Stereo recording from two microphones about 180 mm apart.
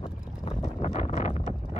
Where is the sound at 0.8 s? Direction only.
40° left (ahead or behind).